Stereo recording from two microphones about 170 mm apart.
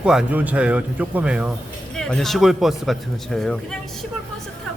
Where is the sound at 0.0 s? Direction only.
5° right (ahead or behind).